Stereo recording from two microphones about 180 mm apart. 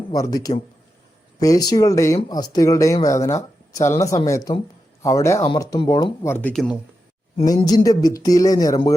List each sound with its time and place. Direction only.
0.1 s speech: 20° left (ahead or behind)
7.4 s speech: 20° left (ahead or behind)